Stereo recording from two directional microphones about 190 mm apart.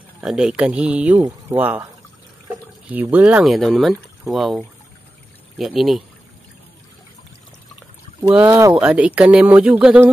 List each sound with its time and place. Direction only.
0.2 s speech: 5° right (ahead or behind)
2.9 s speech: 10° right (ahead or behind)
5.6 s speech: centre (ahead or behind)
8.2 s speech: 5° right (ahead or behind)
8.7 s speech: 5° right (ahead or behind)